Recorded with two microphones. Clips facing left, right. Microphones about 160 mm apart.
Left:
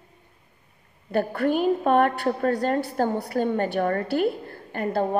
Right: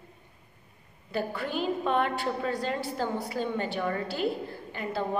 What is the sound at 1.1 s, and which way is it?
A woman's voice, 55° left (ahead or behind).